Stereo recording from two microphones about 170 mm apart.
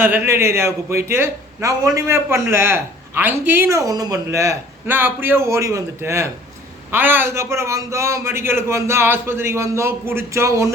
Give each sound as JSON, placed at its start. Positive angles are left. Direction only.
{"t": 0.0, "sound": "a man's voice", "side_deg": -15}